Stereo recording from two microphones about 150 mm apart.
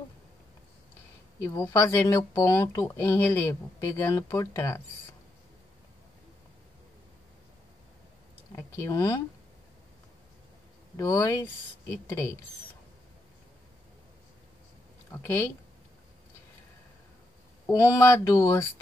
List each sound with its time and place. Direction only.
1.4 s speech: 20° left (ahead or behind)
8.5 s speech: 20° left (ahead or behind)
11.0 s speech: 20° left (ahead or behind)
15.2 s speech: 15° left (ahead or behind)
17.6 s speech: 20° left (ahead or behind)